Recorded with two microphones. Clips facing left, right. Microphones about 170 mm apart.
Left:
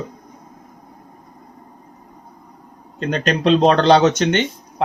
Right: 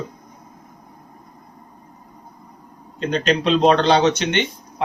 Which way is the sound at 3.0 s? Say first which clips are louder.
Even; 45° left (ahead or behind).